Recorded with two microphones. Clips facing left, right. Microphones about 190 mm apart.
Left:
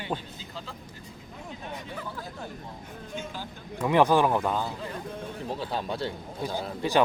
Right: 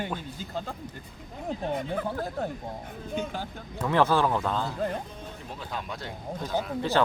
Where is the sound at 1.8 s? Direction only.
55° right (ahead or behind).